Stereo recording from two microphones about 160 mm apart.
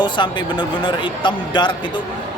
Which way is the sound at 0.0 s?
30° left (ahead or behind).